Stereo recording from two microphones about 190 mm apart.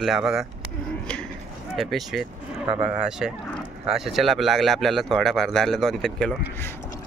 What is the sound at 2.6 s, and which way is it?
Speech, 30° right (ahead or behind).